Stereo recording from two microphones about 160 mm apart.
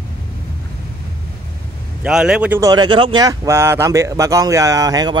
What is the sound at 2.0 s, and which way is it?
Speech, 5° right (ahead or behind).